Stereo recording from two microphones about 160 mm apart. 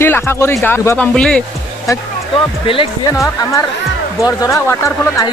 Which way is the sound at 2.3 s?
35° left (ahead or behind).